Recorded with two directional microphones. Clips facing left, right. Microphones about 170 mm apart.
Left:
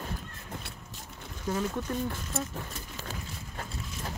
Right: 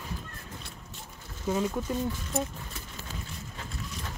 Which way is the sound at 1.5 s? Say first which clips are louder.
Right 3 dB; 10° right (ahead or behind).